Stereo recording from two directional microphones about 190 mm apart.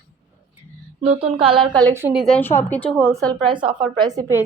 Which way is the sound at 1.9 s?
10° right (ahead or behind).